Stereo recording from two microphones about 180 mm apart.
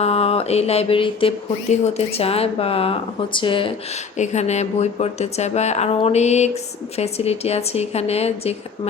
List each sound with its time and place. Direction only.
0.0 s mantra: 35° left (ahead or behind)
1.7 s speech: 35° left (ahead or behind)
4.2 s speech: 40° left (ahead or behind)